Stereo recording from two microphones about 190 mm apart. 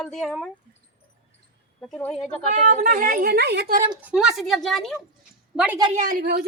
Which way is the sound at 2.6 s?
40° right (ahead or behind).